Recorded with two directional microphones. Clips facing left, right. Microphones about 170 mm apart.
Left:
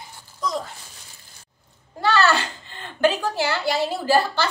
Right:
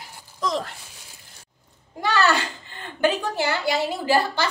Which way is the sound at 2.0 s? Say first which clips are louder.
Left 2 dB; 15° right (ahead or behind).